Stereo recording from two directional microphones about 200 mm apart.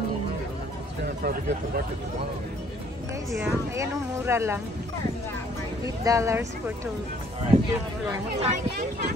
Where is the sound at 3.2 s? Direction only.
Centre (ahead or behind).